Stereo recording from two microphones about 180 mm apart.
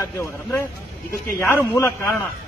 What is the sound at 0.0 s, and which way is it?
A man's voice, 15° left (ahead or behind).